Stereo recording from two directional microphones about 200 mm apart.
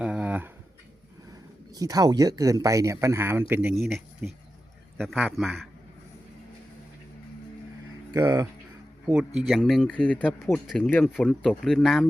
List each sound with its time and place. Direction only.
0.0 s a sound: 5° right (ahead or behind)
1.7 s speech: 20° right (ahead or behind); by 5.6 s centre (ahead or behind)
8.1 s speech: 15° right (ahead or behind)
9.0 s speech: 5° right (ahead or behind)